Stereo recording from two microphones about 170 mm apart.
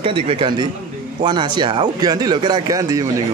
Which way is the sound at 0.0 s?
35° right (ahead or behind).